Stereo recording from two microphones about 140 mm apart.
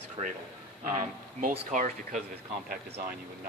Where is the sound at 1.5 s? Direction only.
65° right (ahead or behind).